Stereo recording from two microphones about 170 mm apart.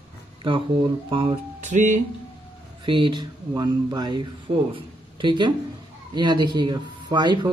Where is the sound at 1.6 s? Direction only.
45° right (ahead or behind).